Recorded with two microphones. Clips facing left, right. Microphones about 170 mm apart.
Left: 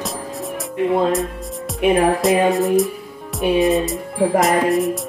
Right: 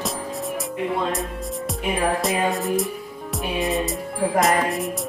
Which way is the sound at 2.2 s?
Centre (ahead or behind).